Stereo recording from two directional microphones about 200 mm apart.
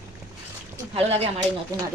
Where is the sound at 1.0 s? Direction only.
30° right (ahead or behind).